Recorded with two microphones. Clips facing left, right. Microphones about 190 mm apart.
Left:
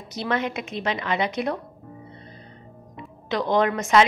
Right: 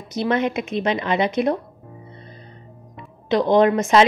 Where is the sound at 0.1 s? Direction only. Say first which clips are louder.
Right 5 dB; 20° right (ahead or behind).